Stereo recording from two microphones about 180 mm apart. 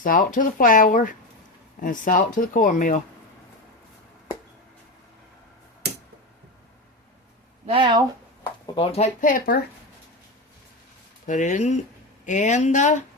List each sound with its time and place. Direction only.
0.0 s speech: 50° left (ahead or behind)
5.8 s a sound: 65° right (ahead or behind)
7.7 s speech: 25° right (ahead or behind)
8.6 s speech: 30° left (ahead or behind)
9.2 s speech: 50° left (ahead or behind)
11.3 s speech: 45° left (ahead or behind)